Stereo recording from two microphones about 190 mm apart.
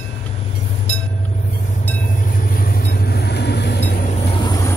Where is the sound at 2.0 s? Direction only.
45° left (ahead or behind); by 3.8 s 60° left (ahead or behind).